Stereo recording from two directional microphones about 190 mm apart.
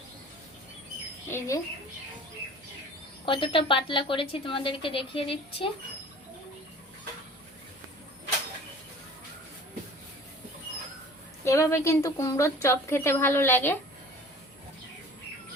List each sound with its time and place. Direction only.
1.3 s a woman's voice: 15° left (ahead or behind)
3.2 s a woman's voice: 25° left (ahead or behind)
11.4 s a woman's voice: 15° left (ahead or behind)